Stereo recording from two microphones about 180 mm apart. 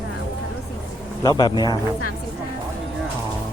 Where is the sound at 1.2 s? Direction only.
25° left (ahead or behind).